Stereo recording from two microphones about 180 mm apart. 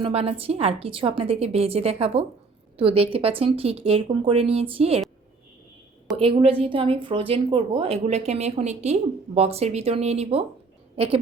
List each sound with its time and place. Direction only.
0.0 s a woman's voice: 35° right (ahead or behind)
6.1 s a woman's voice: 30° right (ahead or behind)